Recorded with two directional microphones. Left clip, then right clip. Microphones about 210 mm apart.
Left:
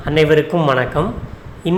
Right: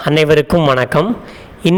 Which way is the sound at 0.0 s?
50° right (ahead or behind).